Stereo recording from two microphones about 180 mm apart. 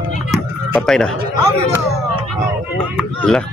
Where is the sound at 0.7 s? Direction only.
5° left (ahead or behind).